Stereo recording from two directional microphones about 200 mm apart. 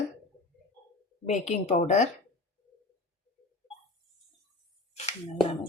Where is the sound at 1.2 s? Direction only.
35° left (ahead or behind).